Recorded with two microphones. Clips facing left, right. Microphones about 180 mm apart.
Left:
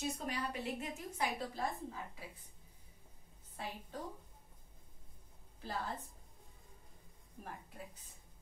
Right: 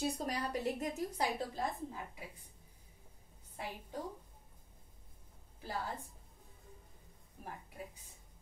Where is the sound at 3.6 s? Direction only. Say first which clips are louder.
Right 1 dB; 15° right (ahead or behind).